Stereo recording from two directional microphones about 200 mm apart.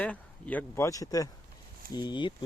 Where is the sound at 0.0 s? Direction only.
5° left (ahead or behind).